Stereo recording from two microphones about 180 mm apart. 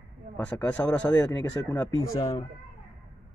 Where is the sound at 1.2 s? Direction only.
20° left (ahead or behind).